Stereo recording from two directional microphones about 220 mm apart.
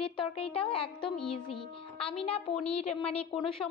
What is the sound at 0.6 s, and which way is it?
A woman's voice, 25° left (ahead or behind).